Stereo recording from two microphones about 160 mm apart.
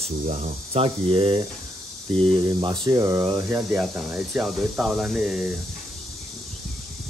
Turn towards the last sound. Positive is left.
turn(degrees=-5)  # may be behind; listen again after turning